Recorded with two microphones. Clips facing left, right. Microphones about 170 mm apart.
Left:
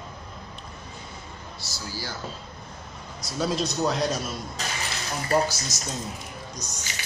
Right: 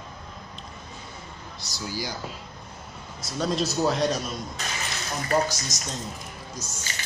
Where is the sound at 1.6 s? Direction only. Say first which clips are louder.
Right 4 dB; 15° right (ahead or behind).